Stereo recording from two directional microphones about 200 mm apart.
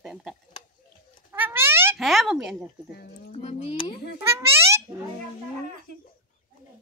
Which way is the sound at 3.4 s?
30° left (ahead or behind).